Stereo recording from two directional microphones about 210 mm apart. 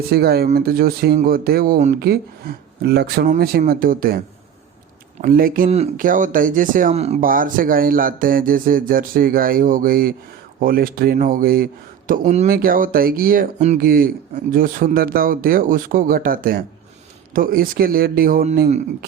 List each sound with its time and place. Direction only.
0.1 s speech: 50° right (ahead or behind)
5.2 s speech: 45° right (ahead or behind)